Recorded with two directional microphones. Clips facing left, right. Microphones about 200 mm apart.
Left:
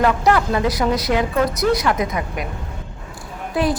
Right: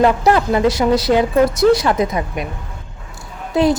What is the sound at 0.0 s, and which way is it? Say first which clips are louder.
A woman's voice: right 3 dB; 25° right (ahead or behind).